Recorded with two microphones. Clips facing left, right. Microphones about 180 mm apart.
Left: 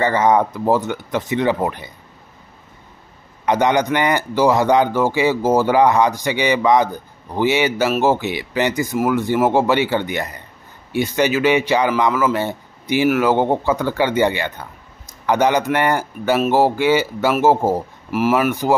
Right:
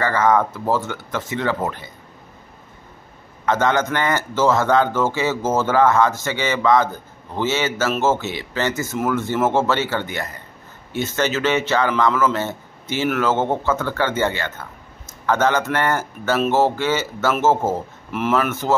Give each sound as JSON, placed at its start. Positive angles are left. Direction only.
{"t": 0.0, "sound": "speech", "side_deg": 20}
{"t": 3.4, "sound": "speech", "side_deg": 15}